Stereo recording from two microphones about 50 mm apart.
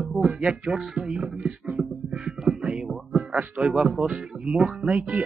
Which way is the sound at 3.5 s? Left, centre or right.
Centre.